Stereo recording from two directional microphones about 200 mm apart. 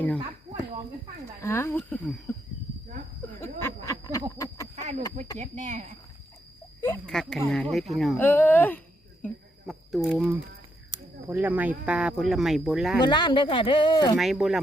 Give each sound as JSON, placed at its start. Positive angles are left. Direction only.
{"t": 1.4, "sound": "speech", "side_deg": 10}
{"t": 3.4, "sound": "a sound", "side_deg": 15}
{"t": 4.7, "sound": "a sound", "side_deg": -35}
{"t": 5.4, "sound": "speech", "side_deg": -35}
{"t": 7.1, "sound": "speech", "side_deg": 0}
{"t": 9.2, "sound": "a sound", "side_deg": 0}
{"t": 11.3, "sound": "speech", "side_deg": -10}
{"t": 13.0, "sound": "speech", "side_deg": 20}
{"t": 14.2, "sound": "speech", "side_deg": 0}